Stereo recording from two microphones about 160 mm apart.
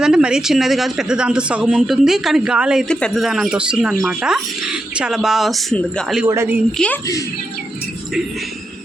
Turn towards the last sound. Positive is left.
turn(degrees=5)  # may be behind; listen again after turning